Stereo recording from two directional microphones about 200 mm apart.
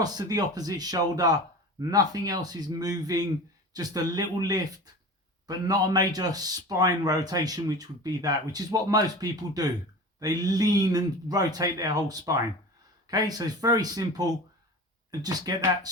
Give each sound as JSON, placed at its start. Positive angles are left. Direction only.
{"t": 0.0, "sound": "a man's voice", "side_deg": -20}